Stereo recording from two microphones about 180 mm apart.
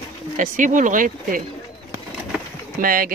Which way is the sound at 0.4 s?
45° right (ahead or behind).